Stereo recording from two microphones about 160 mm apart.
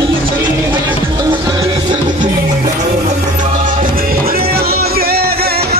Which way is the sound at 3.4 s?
50° right (ahead or behind).